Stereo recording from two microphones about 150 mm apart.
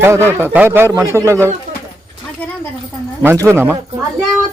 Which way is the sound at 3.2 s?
15° right (ahead or behind).